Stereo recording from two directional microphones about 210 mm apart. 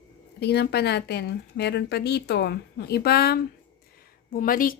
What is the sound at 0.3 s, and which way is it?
A woman's voice, 50° left (ahead or behind).